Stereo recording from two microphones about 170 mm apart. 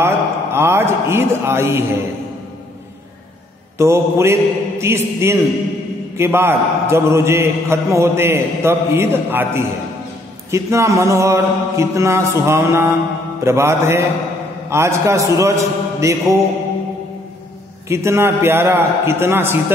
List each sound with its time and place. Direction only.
0.0 s a sound: 15° right (ahead or behind)
3.7 s a man's voice: 15° right (ahead or behind)
17.8 s a man's voice: 15° right (ahead or behind)